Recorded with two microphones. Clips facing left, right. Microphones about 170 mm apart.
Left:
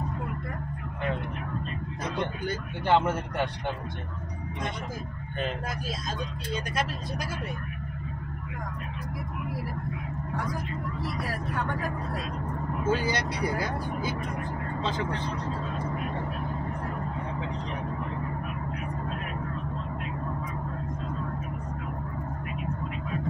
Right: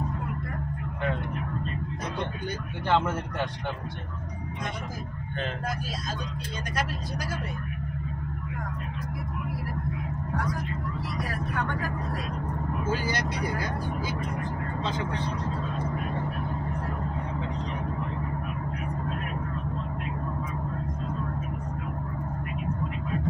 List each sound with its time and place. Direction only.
2.9 s speech: 15° left (ahead or behind)